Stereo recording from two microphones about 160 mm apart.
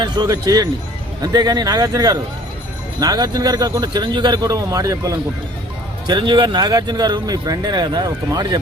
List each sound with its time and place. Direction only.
0.0 s speech: 25° right (ahead or behind)